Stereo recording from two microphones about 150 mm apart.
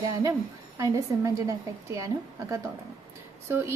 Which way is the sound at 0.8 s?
20° right (ahead or behind).